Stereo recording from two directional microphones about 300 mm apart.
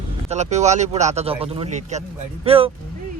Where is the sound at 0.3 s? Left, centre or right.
Right.